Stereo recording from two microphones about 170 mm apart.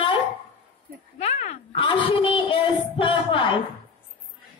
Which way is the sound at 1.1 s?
40° left (ahead or behind).